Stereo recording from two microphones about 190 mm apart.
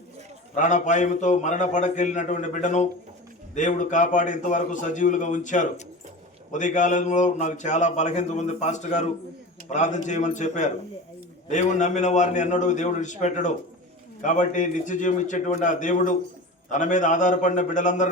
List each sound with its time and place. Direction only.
0.5 s speech: 40° left (ahead or behind)